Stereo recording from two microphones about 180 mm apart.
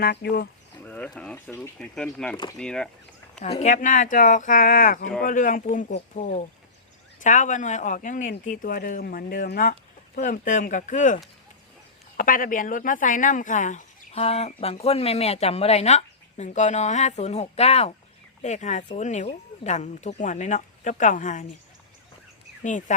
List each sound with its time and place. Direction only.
0.0 s speech: 65° left (ahead or behind)
0.9 s speech: 10° left (ahead or behind)
3.4 s speech: 40° left (ahead or behind)
22.6 s speech: 45° left (ahead or behind)